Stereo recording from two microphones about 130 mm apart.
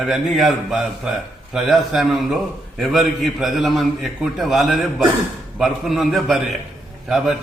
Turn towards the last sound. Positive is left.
turn(degrees=-5)  # may be behind; listen again after turning